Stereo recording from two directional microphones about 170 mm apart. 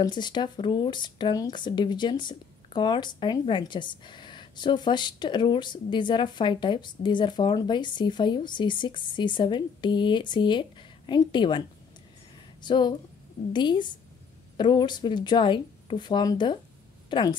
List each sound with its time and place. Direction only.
0.0 s speech: 25° left (ahead or behind)
12.6 s speech: 25° left (ahead or behind)